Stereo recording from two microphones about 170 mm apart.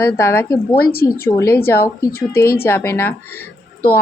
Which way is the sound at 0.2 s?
15° left (ahead or behind).